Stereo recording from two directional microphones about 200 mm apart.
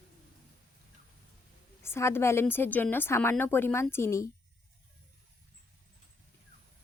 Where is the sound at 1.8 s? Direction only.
10° left (ahead or behind).